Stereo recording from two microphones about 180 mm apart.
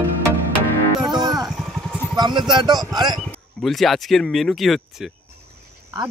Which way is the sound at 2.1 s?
25° right (ahead or behind).